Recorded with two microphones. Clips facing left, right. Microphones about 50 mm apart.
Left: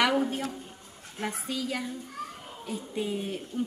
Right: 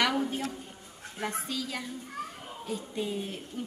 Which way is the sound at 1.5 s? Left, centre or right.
Centre.